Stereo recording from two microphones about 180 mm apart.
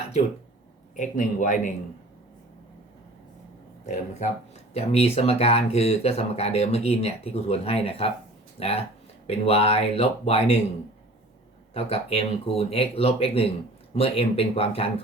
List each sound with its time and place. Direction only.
0.9 s a man's voice: 45° left (ahead or behind)
3.8 s speech: 40° left (ahead or behind)
11.7 s speech: 35° left (ahead or behind)